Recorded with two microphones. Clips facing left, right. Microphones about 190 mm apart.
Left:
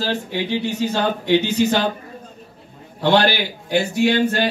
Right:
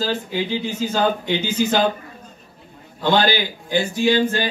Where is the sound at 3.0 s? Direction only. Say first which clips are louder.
Left 2 dB; 70° left (ahead or behind).